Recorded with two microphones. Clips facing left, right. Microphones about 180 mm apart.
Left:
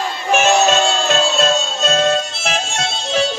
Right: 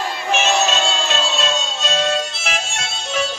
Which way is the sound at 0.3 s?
50° left (ahead or behind).